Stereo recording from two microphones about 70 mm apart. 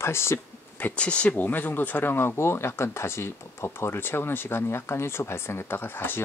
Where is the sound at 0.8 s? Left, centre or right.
Centre.